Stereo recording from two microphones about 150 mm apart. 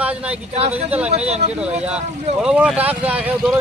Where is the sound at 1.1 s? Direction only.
45° right (ahead or behind).